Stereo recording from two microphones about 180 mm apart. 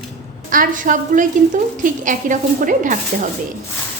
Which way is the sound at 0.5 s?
50° right (ahead or behind).